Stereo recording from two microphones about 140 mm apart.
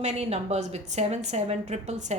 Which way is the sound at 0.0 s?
50° right (ahead or behind).